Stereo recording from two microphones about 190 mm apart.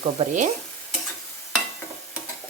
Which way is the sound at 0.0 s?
40° right (ahead or behind).